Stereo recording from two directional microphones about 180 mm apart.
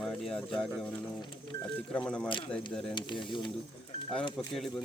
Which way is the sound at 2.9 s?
25° left (ahead or behind).